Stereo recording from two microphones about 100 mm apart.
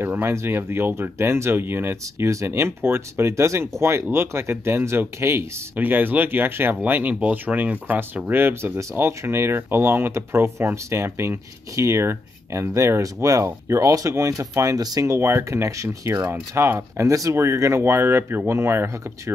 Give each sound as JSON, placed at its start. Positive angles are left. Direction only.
{"t": 0.0, "sound": "speech", "side_deg": -25}